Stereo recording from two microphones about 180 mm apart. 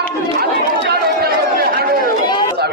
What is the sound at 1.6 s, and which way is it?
Chatter, 55° right (ahead or behind).